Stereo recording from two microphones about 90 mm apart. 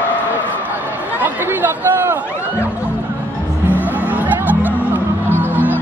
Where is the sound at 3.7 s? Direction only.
20° right (ahead or behind).